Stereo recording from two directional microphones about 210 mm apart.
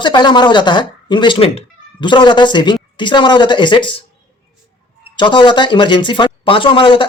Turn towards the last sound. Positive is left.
turn(degrees=25)  # may be behind; listen again after turning